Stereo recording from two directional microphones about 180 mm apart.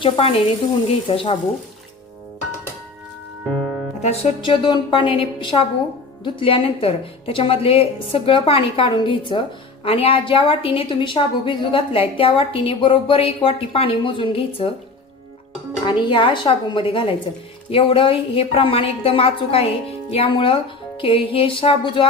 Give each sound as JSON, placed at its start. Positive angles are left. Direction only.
{"t": 0.0, "sound": "a woman's voice", "side_deg": 30}
{"t": 3.5, "sound": "music", "side_deg": 0}
{"t": 4.0, "sound": "a woman's voice", "side_deg": 35}
{"t": 15.9, "sound": "a woman's voice", "side_deg": 25}